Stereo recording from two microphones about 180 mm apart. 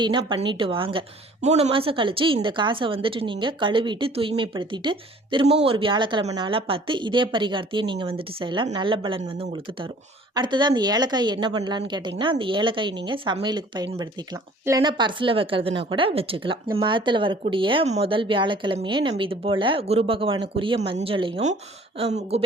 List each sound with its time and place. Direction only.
0.0 s speech: 25° right (ahead or behind)